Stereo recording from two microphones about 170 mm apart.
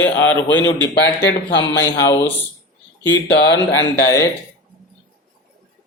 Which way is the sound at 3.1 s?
90° left.